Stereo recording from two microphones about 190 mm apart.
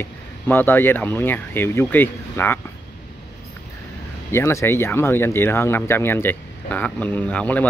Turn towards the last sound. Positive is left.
turn(degrees=5)  # may be behind; listen again after turning